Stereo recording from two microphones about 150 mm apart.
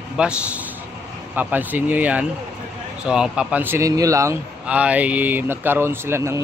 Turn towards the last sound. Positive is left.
turn(degrees=-20)  # may be behind; listen again after turning